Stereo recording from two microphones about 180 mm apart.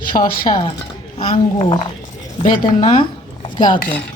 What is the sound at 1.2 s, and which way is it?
Speech, 30° left (ahead or behind).